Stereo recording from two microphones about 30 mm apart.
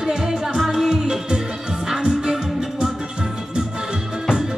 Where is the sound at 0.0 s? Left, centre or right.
Centre.